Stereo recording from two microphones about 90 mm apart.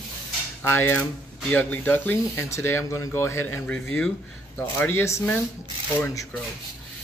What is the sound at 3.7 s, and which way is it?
Speech, 10° left (ahead or behind).